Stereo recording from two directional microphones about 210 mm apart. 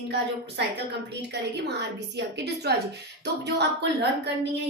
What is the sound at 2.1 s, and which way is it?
A woman's voice, 50° right (ahead or behind).